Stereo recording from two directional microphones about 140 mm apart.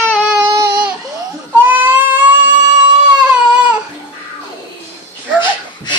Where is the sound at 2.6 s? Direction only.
30° right (ahead or behind).